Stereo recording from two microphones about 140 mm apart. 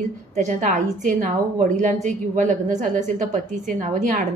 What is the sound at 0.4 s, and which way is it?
A woman's voice, 65° right (ahead or behind).